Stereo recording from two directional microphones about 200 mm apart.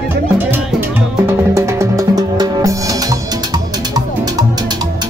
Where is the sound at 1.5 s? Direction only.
15° right (ahead or behind).